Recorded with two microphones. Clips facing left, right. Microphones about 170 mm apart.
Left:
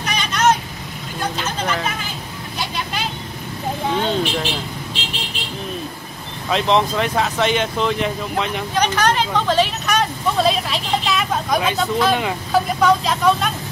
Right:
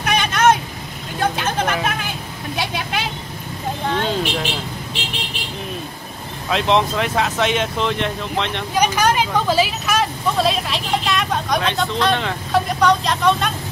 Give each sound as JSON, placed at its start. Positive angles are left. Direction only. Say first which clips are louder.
{"t": 0.0, "sound": "vehicle", "louder": "right 2 dB", "side_deg": -55}
{"t": 1.3, "sound": "speech", "louder": "right 2 dB", "side_deg": -55}
{"t": 2.5, "sound": "vehicle", "louder": "right 2 dB", "side_deg": -60}
{"t": 4.0, "sound": "speech", "louder": "left 1 dB", "side_deg": -5}
{"t": 6.5, "sound": "speech", "louder": "even", "side_deg": 0}
{"t": 8.7, "sound": "speech", "louder": "right 1 dB", "side_deg": -10}